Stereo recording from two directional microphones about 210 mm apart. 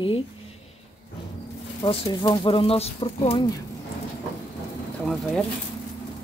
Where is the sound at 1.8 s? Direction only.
20° left (ahead or behind).